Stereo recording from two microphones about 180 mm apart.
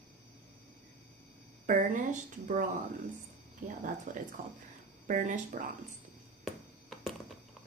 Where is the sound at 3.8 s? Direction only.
45° right (ahead or behind).